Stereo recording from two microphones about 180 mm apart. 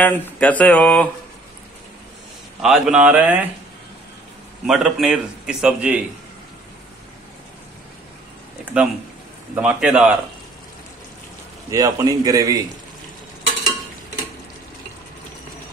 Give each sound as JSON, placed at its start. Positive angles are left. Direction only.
{"t": 0.0, "sound": "speech", "side_deg": 10}
{"t": 2.6, "sound": "speech", "side_deg": 0}
{"t": 4.6, "sound": "a man's voice", "side_deg": 0}
{"t": 8.7, "sound": "a man's voice", "side_deg": -5}
{"t": 11.7, "sound": "a man's voice", "side_deg": -20}